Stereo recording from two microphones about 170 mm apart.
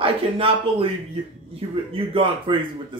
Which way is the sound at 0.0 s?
30° right (ahead or behind).